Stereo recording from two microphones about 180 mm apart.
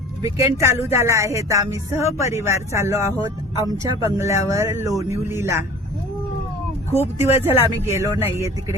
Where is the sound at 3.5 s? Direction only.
20° left (ahead or behind).